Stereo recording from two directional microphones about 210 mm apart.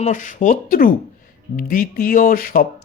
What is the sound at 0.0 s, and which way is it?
Speech, 35° left (ahead or behind).